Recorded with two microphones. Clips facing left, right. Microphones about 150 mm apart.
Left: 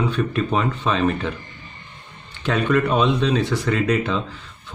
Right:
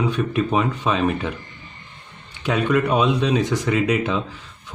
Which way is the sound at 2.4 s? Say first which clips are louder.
Even; 10° right (ahead or behind).